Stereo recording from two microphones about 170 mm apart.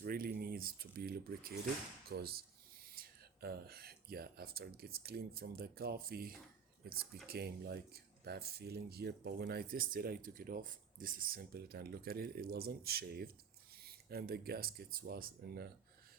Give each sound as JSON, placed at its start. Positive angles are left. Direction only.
{"t": 0.0, "sound": "speech", "side_deg": -60}